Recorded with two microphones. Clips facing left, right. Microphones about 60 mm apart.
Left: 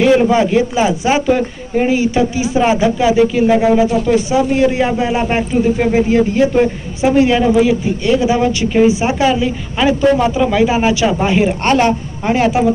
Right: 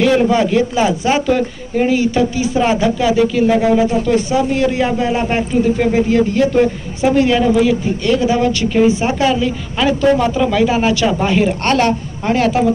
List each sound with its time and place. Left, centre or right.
0.0 s speech: centre